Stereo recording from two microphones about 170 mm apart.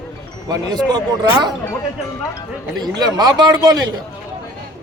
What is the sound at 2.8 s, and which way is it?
Speech, 25° right (ahead or behind).